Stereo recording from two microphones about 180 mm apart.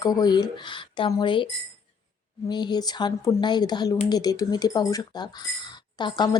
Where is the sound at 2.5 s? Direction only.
25° left (ahead or behind).